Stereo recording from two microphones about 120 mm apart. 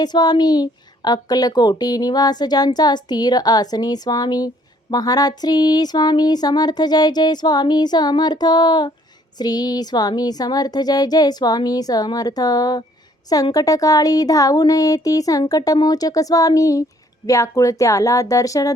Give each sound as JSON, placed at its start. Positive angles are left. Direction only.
{"t": 0.0, "sound": "a woman's voice", "side_deg": 35}